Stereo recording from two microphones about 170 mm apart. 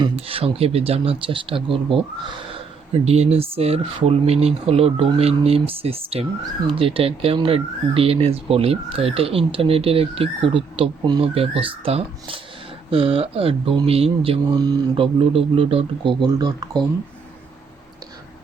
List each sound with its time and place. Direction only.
0.0 s speech: 35° right (ahead or behind)
3.0 s speech: 40° right (ahead or behind)